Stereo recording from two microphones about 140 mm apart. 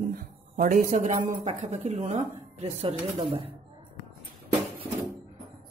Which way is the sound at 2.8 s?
40° right (ahead or behind).